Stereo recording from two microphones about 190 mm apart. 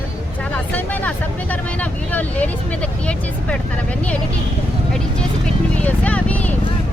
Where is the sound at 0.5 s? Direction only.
10° left (ahead or behind).